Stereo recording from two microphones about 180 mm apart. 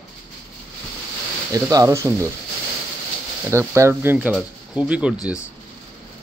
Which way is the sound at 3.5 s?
15° right (ahead or behind).